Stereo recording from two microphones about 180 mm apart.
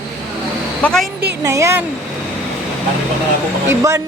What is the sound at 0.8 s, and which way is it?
Speech, 5° left (ahead or behind).